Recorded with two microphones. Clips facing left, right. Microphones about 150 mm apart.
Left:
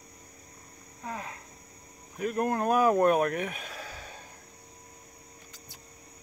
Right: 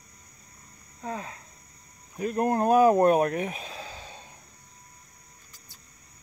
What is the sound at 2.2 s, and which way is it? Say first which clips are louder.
Speech: right 3 dB; 35° right (ahead or behind).